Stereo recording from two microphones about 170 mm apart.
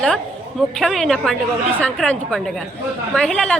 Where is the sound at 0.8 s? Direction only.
Centre (ahead or behind).